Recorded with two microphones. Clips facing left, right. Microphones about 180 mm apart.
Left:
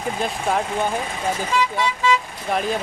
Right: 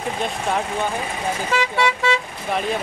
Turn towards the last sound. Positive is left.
turn(degrees=-75)  # may be behind; listen again after turning